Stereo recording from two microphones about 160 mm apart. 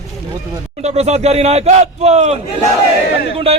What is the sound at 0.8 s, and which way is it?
Speech, 40° right (ahead or behind).